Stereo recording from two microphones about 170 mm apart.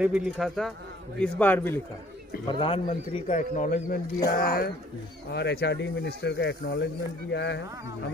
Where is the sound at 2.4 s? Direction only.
30° left (ahead or behind); by 4.0 s 45° left (ahead or behind).